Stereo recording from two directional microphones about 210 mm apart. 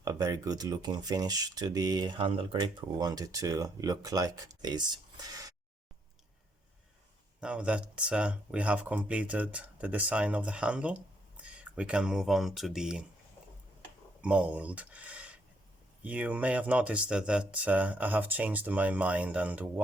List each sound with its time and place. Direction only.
0.0 s speech: 15° right (ahead or behind)
7.4 s speech: 5° right (ahead or behind)
14.2 s speech: 5° right (ahead or behind)